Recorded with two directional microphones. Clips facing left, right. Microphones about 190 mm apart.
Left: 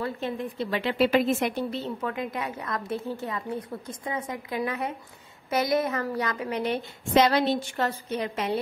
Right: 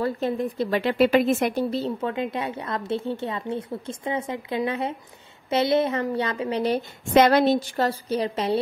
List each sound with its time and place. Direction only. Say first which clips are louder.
0.0 s a woman's voice: right 6 dB; 40° right (ahead or behind)
2.0 s a woman's voice: right 4 dB; 25° right (ahead or behind)
7.2 s a woman's voice: right 4 dB; 50° right (ahead or behind); by 8.5 s 35° right (ahead or behind)